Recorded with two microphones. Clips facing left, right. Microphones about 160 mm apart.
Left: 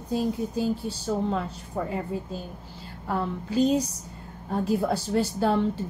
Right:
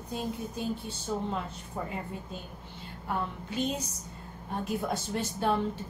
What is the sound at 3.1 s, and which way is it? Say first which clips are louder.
Speech: left 5 dB; 35° left (ahead or behind).